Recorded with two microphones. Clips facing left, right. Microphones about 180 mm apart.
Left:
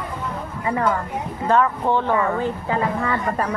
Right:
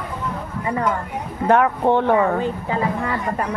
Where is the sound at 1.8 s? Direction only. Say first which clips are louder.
Right 4 dB; 20° right (ahead or behind).